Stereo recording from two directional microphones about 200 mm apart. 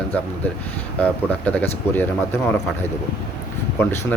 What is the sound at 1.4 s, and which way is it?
Speech, 10° left (ahead or behind).